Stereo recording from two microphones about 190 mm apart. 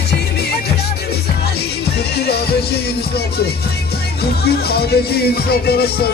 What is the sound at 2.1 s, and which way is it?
Music, 60° left (ahead or behind).